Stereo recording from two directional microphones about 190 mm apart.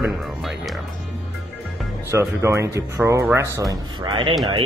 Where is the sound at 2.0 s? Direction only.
15° right (ahead or behind).